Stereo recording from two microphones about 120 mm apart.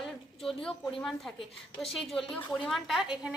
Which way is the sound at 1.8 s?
Centre (ahead or behind).